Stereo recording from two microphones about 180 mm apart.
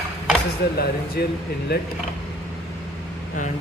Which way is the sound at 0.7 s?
60° left (ahead or behind).